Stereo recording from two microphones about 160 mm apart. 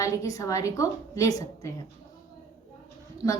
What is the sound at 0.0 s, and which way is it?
A woman's voice, 20° left (ahead or behind).